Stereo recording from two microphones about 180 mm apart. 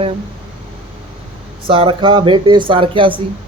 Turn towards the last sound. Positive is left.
turn(degrees=-30)  # may be behind; listen again after turning